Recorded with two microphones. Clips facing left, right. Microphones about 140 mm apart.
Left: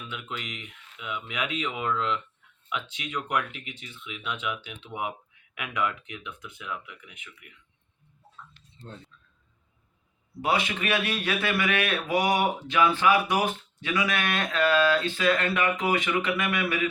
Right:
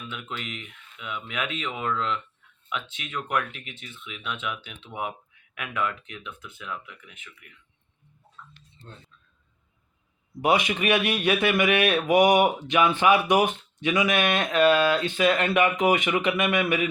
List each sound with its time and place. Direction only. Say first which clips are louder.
0.1 s speech: right 1 dB; 10° left (ahead or behind)
10.4 s a man's voice: right 4 dB; 15° right (ahead or behind)